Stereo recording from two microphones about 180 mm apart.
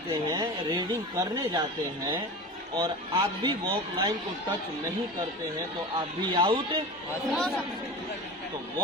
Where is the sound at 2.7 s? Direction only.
25° right (ahead or behind).